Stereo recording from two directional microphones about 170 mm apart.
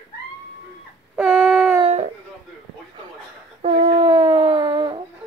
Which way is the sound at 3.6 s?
45° right (ahead or behind).